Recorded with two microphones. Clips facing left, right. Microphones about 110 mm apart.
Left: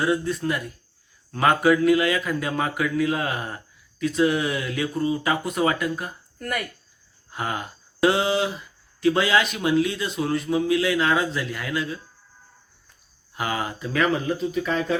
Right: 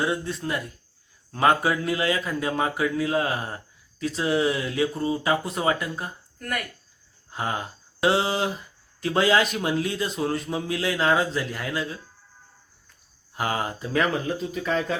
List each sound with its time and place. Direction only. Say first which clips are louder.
0.0 s speech: left 4 dB; 25° right (ahead or behind)
7.3 s speech: even; 25° right (ahead or behind)
13.3 s speech: even; 35° right (ahead or behind)